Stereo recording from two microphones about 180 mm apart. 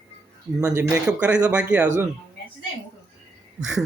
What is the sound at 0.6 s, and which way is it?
Speech, 15° right (ahead or behind).